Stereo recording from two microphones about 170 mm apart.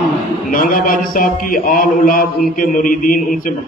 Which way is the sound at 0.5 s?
55° left (ahead or behind).